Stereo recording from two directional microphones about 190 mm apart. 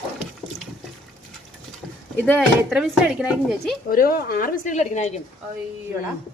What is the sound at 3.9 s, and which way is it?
Speech, 50° left (ahead or behind).